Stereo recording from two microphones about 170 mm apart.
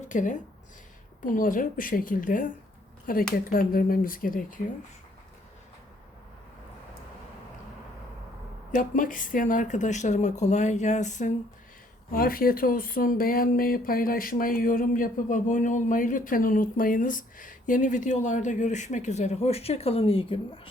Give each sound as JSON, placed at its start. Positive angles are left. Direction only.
{"t": 0.1, "sound": "speech", "side_deg": 50}
{"t": 8.7, "sound": "speech", "side_deg": 50}
{"t": 12.1, "sound": "speech", "side_deg": 60}